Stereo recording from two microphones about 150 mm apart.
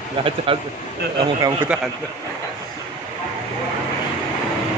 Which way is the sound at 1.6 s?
10° right (ahead or behind).